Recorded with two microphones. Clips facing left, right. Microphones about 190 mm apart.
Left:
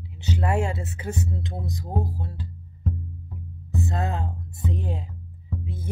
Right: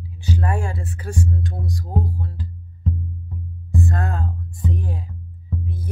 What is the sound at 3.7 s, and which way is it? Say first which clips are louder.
Speech: right 3 dB; 20° left (ahead or behind).